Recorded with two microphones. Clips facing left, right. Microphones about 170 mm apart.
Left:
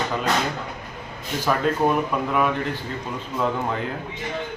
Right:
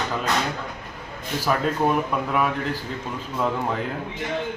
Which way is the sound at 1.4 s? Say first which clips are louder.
Left 1 dB; centre (ahead or behind).